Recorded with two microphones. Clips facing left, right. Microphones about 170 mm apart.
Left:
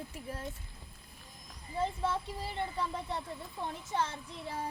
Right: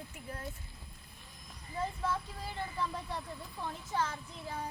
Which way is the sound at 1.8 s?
25° left (ahead or behind).